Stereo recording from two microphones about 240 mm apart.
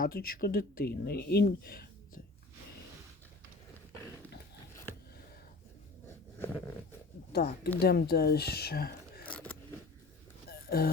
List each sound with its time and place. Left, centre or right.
0.0 s speech: left
7.3 s speech: left
9.2 s zipper: centre
10.5 s a sound: left